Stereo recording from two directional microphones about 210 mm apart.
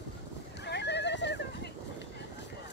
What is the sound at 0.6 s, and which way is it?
Horse, 55° left (ahead or behind).